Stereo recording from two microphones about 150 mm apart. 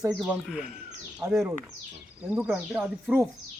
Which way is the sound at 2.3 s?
10° right (ahead or behind).